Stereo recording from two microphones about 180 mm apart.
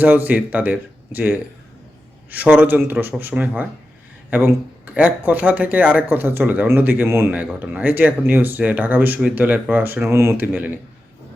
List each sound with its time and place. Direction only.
0.0 s speech: 10° right (ahead or behind)